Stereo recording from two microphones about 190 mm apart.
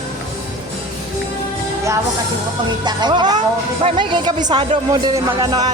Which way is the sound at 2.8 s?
25° right (ahead or behind).